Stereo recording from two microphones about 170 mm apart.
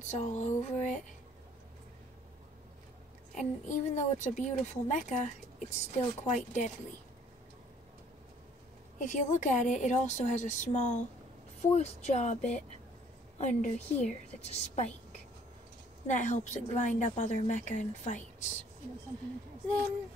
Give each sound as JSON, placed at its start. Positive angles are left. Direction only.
{"t": 0.0, "sound": "speech", "side_deg": 45}
{"t": 3.3, "sound": "speech", "side_deg": 45}
{"t": 8.9, "sound": "a woman's voice", "side_deg": 45}
{"t": 16.1, "sound": "speech", "side_deg": 45}